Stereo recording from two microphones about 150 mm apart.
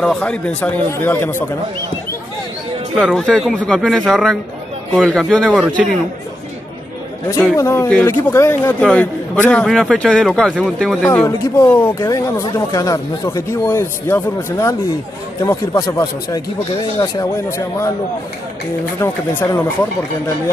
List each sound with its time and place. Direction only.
0.0 s speech: 5° left (ahead or behind)
3.0 s a man's voice: centre (ahead or behind)
7.2 s a man's voice: 20° left (ahead or behind)
11.1 s speech: 20° left (ahead or behind)
18.9 s speech: 15° left (ahead or behind)